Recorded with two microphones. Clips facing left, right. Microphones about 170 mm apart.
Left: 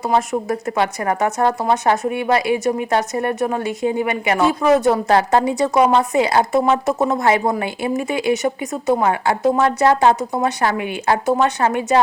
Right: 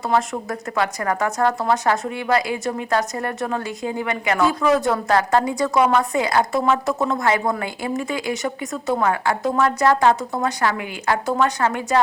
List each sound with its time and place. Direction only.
0.1 s a woman's voice: 25° left (ahead or behind)